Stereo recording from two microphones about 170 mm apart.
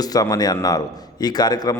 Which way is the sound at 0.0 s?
20° left (ahead or behind).